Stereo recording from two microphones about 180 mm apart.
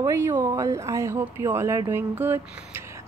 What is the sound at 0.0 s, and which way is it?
Speech, 15° right (ahead or behind).